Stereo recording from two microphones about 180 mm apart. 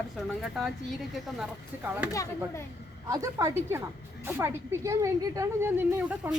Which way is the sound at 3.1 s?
20° right (ahead or behind).